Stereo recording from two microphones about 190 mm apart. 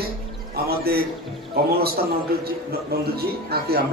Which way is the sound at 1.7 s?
55° right (ahead or behind).